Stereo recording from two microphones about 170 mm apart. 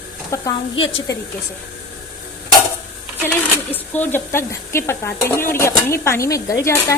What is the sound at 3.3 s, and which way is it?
Speech, 10° left (ahead or behind).